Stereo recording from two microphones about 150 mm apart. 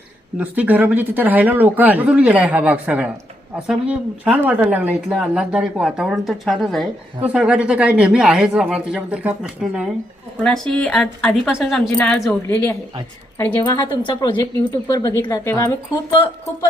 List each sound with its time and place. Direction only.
0.3 s speech: 10° right (ahead or behind)
10.3 s a woman's voice: 5° left (ahead or behind)
13.7 s a woman's voice: 30° left (ahead or behind)